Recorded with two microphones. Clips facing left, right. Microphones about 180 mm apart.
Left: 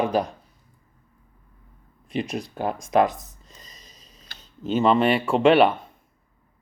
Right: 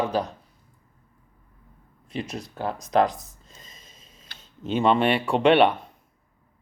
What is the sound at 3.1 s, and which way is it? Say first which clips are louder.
Speech: left 1 dB; 45° left (ahead or behind).